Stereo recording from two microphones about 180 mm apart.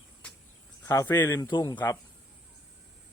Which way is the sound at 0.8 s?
15° left (ahead or behind).